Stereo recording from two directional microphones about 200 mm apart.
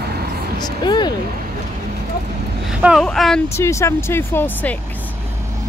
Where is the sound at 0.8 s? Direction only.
20° left (ahead or behind).